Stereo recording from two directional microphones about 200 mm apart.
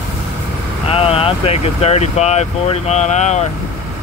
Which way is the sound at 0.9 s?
30° left (ahead or behind).